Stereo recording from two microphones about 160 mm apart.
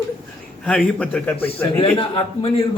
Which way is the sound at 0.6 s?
5° left (ahead or behind).